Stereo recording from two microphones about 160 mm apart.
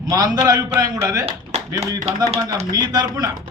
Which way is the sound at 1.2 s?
40° right (ahead or behind).